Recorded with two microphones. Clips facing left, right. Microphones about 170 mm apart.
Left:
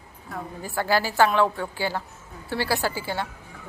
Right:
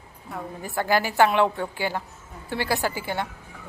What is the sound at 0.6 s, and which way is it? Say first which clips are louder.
A woman's voice: even; 20° right (ahead or behind).